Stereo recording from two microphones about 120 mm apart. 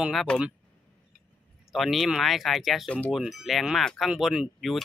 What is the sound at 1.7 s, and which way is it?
Speech, centre (ahead or behind).